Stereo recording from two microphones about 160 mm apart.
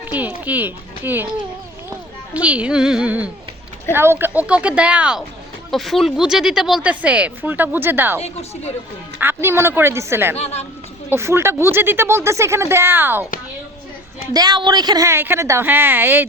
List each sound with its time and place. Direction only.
0.0 s speech: 10° right (ahead or behind)
2.3 s speech: 10° right (ahead or behind)
8.2 s a woman's voice: 40° left (ahead or behind)
9.1 s speech: 15° right (ahead or behind)
10.3 s a woman's voice: 40° left (ahead or behind)
11.1 s speech: 15° right (ahead or behind)
14.3 s speech: 25° right (ahead or behind)